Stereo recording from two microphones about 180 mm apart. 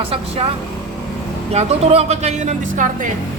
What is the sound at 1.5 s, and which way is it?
Speech, 35° right (ahead or behind).